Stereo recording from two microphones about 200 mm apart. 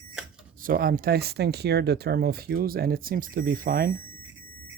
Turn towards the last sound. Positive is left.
turn(degrees=-45)  # may be behind; listen again after turning